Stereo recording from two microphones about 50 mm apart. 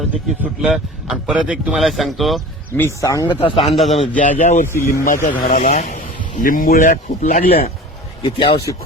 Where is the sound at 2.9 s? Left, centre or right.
Left.